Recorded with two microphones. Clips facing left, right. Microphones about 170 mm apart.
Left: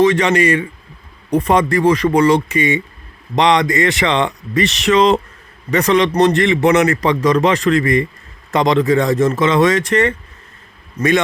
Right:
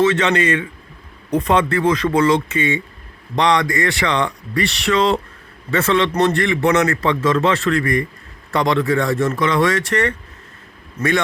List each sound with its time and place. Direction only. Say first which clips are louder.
0.2 s a man's voice: left 3 dB; 10° left (ahead or behind)